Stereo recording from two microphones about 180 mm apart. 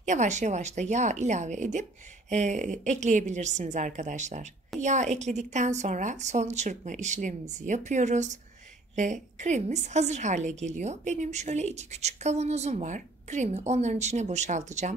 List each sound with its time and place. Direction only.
0.0 s a woman's voice: 40° right (ahead or behind)